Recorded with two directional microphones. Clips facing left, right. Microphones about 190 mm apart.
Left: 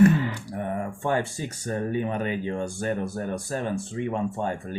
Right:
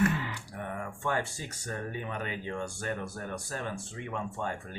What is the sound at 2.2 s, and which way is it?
Speech, 30° left (ahead or behind).